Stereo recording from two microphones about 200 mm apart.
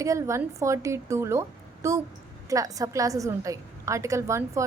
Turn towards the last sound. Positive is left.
turn(degrees=-15)  # may be behind; listen again after turning